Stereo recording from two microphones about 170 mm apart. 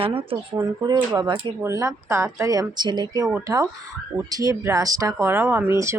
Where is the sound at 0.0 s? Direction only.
35° right (ahead or behind).